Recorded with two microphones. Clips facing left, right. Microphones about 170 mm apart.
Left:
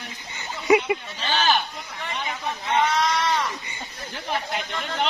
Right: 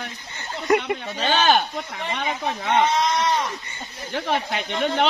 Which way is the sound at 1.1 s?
55° right (ahead or behind).